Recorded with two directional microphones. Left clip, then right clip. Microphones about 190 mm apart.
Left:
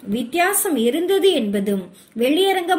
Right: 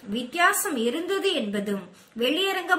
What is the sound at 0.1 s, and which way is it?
A woman's voice, 15° left (ahead or behind).